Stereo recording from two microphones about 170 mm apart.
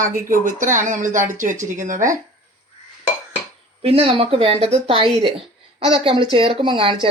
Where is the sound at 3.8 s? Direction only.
35° right (ahead or behind).